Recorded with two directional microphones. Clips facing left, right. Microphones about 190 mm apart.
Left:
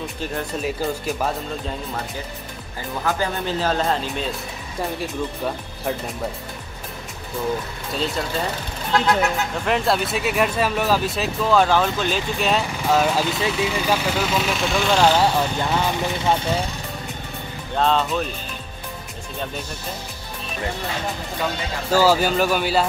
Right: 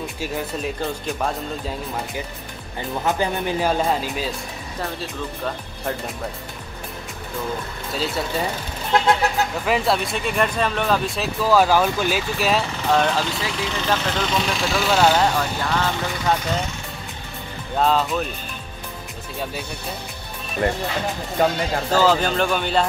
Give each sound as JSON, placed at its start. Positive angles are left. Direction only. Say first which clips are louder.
{"t": 0.2, "sound": "speech", "louder": "even", "side_deg": -5}
{"t": 3.0, "sound": "speech", "louder": "right 1 dB", "side_deg": -20}
{"t": 7.9, "sound": "speech", "louder": "even", "side_deg": -5}
{"t": 8.9, "sound": "speech", "louder": "right 1 dB", "side_deg": -20}
{"t": 9.7, "sound": "speech", "louder": "left 2 dB", "side_deg": 0}
{"t": 15.1, "sound": "speech", "louder": "left 1 dB", "side_deg": 10}
{"t": 17.7, "sound": "speech", "louder": "even", "side_deg": -5}
{"t": 21.4, "sound": "speech", "louder": "right 7 dB", "side_deg": -45}
{"t": 21.9, "sound": "speech", "louder": "left 2 dB", "side_deg": 10}